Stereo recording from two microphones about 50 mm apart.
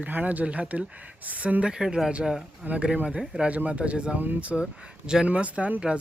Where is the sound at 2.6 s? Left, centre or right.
Right.